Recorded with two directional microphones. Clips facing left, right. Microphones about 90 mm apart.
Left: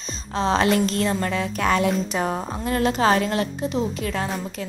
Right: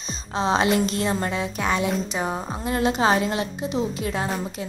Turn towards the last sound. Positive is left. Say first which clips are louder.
# left 1 dB
turn(degrees=-20)  # may be behind; listen again after turning